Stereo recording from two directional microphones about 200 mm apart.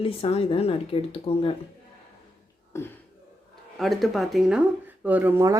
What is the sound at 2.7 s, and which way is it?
Speech, 15° left (ahead or behind).